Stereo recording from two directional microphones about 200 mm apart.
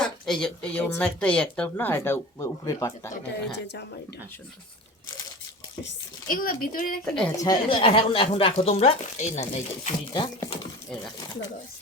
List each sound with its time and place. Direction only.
0.0 s speech: 5° left (ahead or behind)
6.2 s speech: 45° left (ahead or behind)
7.0 s a woman's voice: 5° left (ahead or behind)
7.3 s speech: 20° left (ahead or behind)
10.1 s speech: 20° left (ahead or behind)